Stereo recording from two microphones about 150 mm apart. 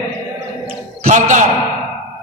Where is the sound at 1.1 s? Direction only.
60° right (ahead or behind).